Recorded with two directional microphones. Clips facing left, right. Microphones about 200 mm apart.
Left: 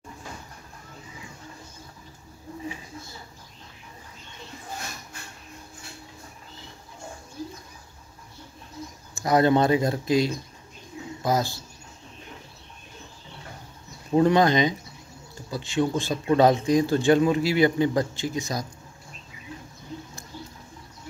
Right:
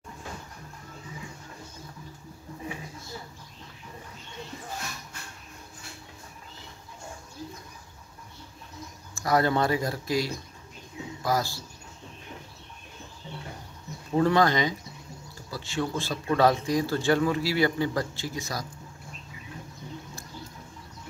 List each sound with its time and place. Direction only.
9.1 s a man's voice: 20° left (ahead or behind)
14.1 s a man's voice: 20° left (ahead or behind)